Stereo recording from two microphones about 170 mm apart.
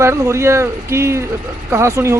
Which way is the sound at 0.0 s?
15° right (ahead or behind).